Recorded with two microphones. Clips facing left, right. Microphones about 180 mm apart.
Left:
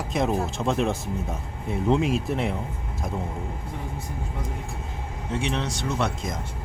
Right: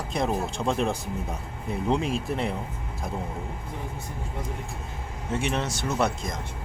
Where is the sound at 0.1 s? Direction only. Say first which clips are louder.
Left 2 dB; centre (ahead or behind).